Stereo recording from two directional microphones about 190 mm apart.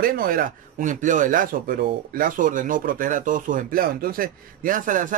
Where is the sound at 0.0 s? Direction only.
50° right (ahead or behind).